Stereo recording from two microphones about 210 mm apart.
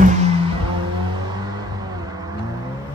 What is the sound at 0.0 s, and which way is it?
Music, 35° right (ahead or behind).